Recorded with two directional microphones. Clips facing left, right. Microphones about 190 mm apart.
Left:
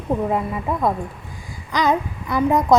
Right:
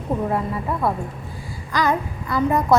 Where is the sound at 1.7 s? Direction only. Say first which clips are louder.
Left 2 dB; 20° left (ahead or behind).